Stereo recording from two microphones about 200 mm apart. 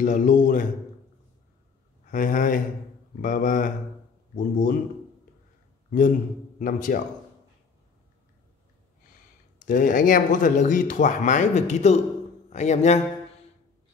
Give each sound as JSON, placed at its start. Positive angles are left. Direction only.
{"t": 0.0, "sound": "speech", "side_deg": 40}
{"t": 2.0, "sound": "speech", "side_deg": 40}
{"t": 5.9, "sound": "a man's voice", "side_deg": 40}
{"t": 9.7, "sound": "a man's voice", "side_deg": 45}